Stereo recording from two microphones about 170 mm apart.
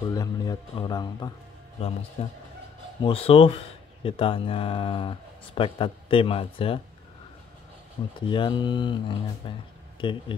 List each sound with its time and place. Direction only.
0.1 s a man's voice: 20° left (ahead or behind)
2.2 s speech: 35° left (ahead or behind)
8.2 s a man's voice: 25° left (ahead or behind)